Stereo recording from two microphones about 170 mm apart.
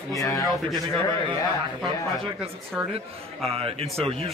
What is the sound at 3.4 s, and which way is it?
Speech, 35° right (ahead or behind).